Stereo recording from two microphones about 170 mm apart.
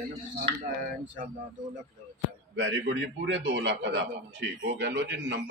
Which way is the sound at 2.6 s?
90° right.